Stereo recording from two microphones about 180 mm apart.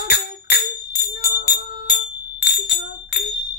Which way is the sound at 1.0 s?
60° left (ahead or behind).